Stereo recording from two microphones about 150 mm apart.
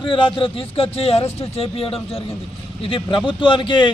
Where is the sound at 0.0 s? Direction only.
35° left (ahead or behind).